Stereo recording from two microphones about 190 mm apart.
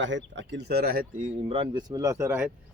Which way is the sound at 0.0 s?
75° right (ahead or behind).